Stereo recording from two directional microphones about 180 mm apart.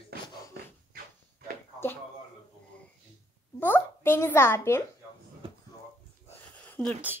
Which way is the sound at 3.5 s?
10° left (ahead or behind).